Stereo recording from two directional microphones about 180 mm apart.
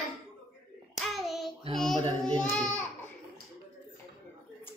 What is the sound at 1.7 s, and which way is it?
Speech, centre (ahead or behind).